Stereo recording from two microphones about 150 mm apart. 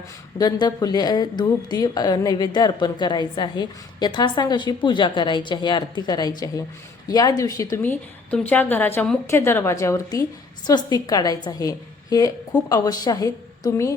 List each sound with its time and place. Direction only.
0.3 s a woman's voice: 25° left (ahead or behind)
7.8 s a woman's voice: 10° left (ahead or behind)